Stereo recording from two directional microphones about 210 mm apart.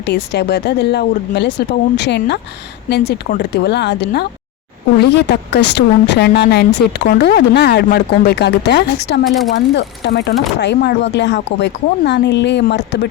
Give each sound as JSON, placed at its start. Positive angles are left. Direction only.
{"t": 0.0, "sound": "a woman's voice", "side_deg": 55}
{"t": 9.2, "sound": "speech", "side_deg": 0}
{"t": 9.6, "sound": "a woman's voice", "side_deg": 55}